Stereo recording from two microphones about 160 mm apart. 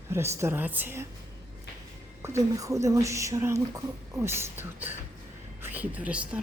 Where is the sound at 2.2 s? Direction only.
20° right (ahead or behind).